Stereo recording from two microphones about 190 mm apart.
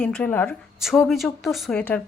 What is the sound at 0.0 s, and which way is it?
A woman's voice, 5° left (ahead or behind).